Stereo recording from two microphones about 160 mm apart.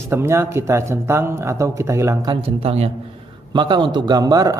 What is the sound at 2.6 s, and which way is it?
Speech, 40° right (ahead or behind).